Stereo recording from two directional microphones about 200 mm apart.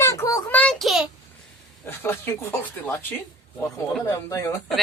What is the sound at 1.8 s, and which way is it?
A child's voice, 10° left (ahead or behind).